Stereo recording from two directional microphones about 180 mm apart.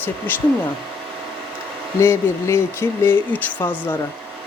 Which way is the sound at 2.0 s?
15° left (ahead or behind).